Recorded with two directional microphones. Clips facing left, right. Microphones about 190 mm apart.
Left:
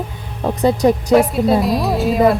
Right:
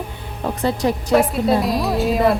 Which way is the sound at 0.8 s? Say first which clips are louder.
Left 6 dB; 40° left (ahead or behind).